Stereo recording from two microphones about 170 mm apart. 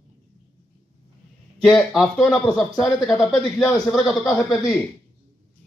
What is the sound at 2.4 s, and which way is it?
Speech, 25° left (ahead or behind).